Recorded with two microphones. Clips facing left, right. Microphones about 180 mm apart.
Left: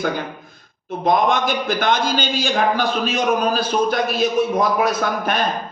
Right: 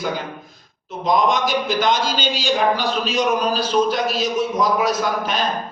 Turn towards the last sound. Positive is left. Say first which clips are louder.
# left 1 dB
turn(degrees=55)  # may be behind; listen again after turning